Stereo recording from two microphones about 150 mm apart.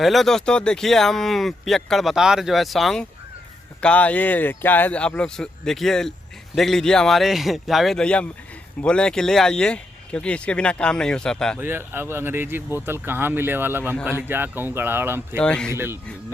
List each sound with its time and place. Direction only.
0.0 s speech: centre (ahead or behind)
11.6 s speech: 15° right (ahead or behind)
15.4 s speech: 5° left (ahead or behind)
15.7 s speech: 15° right (ahead or behind)